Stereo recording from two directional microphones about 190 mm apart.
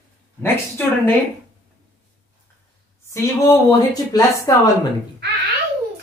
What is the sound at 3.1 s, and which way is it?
Speech, 20° left (ahead or behind).